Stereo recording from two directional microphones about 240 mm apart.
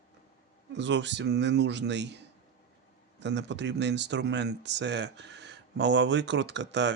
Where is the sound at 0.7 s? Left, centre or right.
Right.